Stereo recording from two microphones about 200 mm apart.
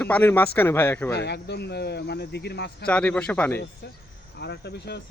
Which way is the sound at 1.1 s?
55° left (ahead or behind).